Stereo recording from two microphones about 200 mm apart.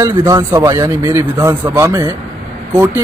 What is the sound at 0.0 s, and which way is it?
A man's voice, 15° right (ahead or behind).